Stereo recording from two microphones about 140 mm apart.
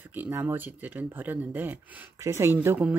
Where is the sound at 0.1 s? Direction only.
15° right (ahead or behind).